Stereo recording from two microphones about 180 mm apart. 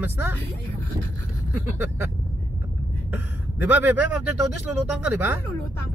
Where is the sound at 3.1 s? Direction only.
10° right (ahead or behind).